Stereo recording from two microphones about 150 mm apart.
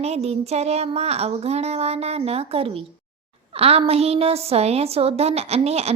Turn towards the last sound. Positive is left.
turn(degrees=-45)  # may be behind; listen again after turning